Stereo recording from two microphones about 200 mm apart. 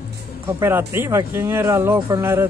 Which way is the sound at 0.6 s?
10° right (ahead or behind).